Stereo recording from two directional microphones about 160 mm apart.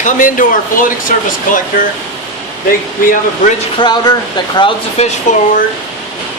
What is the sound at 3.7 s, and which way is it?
Speech, 25° left (ahead or behind).